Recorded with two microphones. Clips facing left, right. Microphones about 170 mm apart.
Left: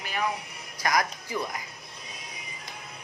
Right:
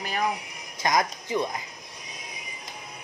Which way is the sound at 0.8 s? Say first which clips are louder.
Right 2 dB; 20° right (ahead or behind).